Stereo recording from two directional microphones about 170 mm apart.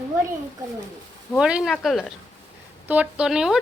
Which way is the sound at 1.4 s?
5° right (ahead or behind).